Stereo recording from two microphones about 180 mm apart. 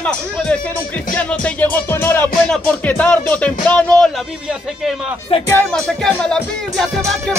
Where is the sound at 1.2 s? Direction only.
5° left (ahead or behind).